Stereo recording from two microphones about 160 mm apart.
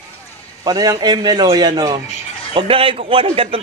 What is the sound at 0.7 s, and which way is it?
A man's voice, 25° right (ahead or behind).